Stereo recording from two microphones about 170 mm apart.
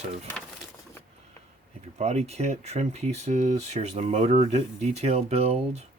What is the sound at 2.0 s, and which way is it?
Rub, 40° right (ahead or behind).